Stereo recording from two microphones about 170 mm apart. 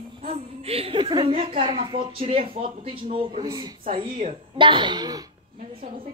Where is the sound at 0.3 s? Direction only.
35° right (ahead or behind).